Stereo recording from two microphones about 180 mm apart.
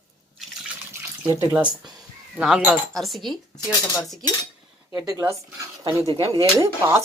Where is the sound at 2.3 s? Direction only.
5° right (ahead or behind).